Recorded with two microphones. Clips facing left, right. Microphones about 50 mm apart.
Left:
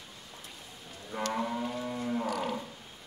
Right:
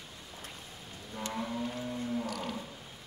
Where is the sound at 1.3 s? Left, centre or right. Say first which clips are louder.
Left 3 dB; left.